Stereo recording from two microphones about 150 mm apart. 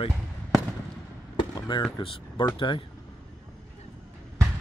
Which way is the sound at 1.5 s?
30° left (ahead or behind).